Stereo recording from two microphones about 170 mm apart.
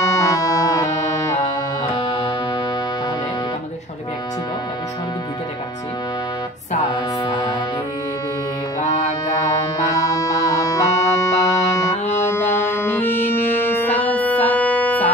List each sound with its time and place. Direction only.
0.0 s music: 15° left (ahead or behind)
2.0 s music: 25° left (ahead or behind)
9.8 s music: 20° left (ahead or behind)